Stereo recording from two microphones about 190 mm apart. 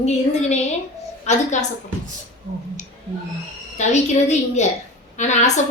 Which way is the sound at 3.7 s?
35° left (ahead or behind).